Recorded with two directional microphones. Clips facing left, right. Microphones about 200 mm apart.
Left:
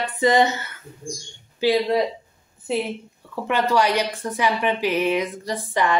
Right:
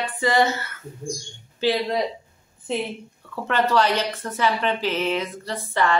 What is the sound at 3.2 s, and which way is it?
A woman's voice, 10° left (ahead or behind).